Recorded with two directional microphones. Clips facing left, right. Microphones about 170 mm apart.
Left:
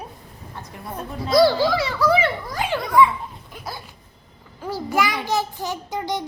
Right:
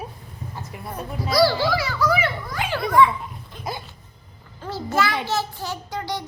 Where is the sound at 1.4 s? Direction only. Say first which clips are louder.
Left 3 dB; 20° left (ahead or behind).